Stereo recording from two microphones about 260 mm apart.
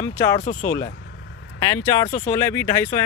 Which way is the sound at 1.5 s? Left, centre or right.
Centre.